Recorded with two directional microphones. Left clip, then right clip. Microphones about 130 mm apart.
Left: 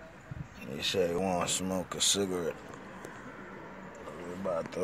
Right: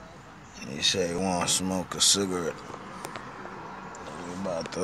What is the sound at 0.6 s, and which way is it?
Speech, centre (ahead or behind).